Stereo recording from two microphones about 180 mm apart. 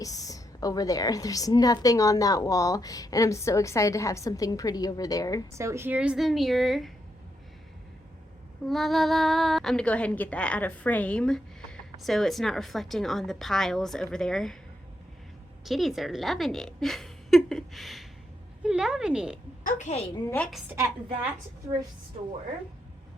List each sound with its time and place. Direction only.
0.0 s a woman's voice: 20° left (ahead or behind)
5.5 s speech: 15° right (ahead or behind)
8.6 s speech: centre (ahead or behind)
15.6 s speech: centre (ahead or behind)
19.6 s a woman's voice: 40° left (ahead or behind)
20.3 s a woman's voice: 5° left (ahead or behind)
20.7 s a woman's voice: 10° right (ahead or behind)